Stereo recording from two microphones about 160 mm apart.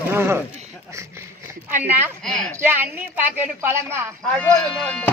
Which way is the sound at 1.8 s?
10° right (ahead or behind).